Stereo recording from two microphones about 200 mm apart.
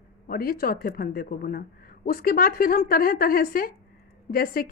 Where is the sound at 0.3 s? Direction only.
45° left (ahead or behind).